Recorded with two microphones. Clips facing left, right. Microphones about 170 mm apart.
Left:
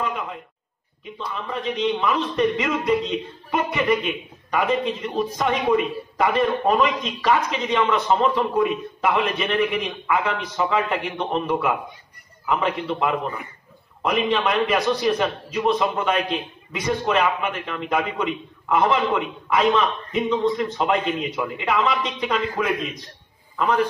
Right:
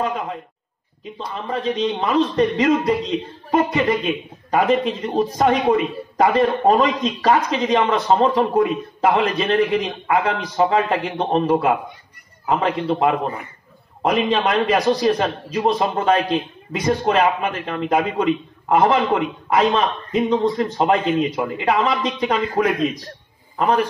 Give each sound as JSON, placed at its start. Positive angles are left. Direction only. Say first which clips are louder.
{"t": 1.1, "sound": "a man's voice", "louder": "right 3 dB", "side_deg": -35}